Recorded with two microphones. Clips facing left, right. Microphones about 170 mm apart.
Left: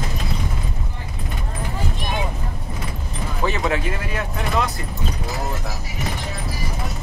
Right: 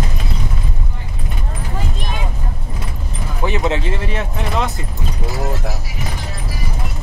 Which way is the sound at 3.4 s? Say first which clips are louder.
Right 3 dB; 20° right (ahead or behind).